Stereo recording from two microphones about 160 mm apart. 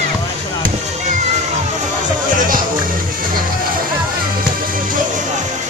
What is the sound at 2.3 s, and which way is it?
Music, 60° right (ahead or behind).